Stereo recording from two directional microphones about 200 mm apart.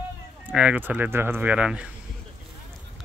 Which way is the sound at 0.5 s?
5° right (ahead or behind).